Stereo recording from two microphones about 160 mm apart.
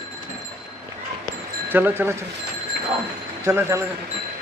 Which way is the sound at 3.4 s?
15° right (ahead or behind).